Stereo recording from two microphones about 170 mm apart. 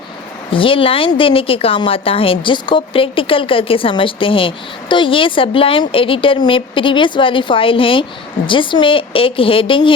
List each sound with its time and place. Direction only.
0.5 s a woman's voice: 30° left (ahead or behind)